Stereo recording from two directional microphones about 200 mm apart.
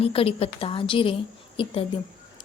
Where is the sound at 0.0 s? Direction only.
30° left (ahead or behind).